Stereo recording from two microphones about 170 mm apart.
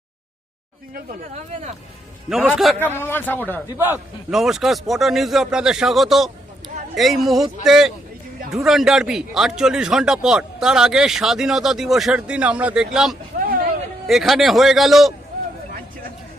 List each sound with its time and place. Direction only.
2.7 s a man's voice: 10° left (ahead or behind)
3.8 s a man's voice: 10° right (ahead or behind)
4.3 s a man's voice: centre (ahead or behind)
13.4 s vehicle: 55° right (ahead or behind)
14.1 s a man's voice: centre (ahead or behind)